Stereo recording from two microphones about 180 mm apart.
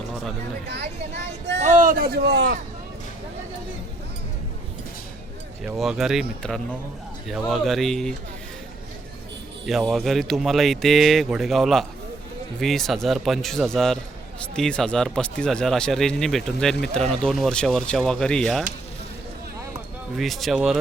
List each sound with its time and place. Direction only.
0.7 s speech: 70° right (ahead or behind)
1.5 s a man's voice: 40° right (ahead or behind); by 2.6 s 80° right
5.6 s speech: centre (ahead or behind)
9.6 s speech: centre (ahead or behind)
20.1 s speech: centre (ahead or behind)